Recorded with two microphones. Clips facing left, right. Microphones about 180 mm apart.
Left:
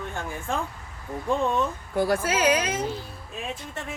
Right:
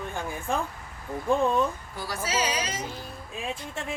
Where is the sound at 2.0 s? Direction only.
55° left (ahead or behind).